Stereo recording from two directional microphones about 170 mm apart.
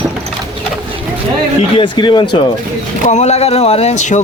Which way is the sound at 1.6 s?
30° left (ahead or behind).